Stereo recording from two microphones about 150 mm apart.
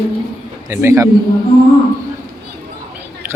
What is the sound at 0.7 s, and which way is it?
Speech, 20° right (ahead or behind).